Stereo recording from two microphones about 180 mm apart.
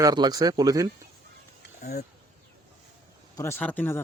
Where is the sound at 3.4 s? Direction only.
15° left (ahead or behind).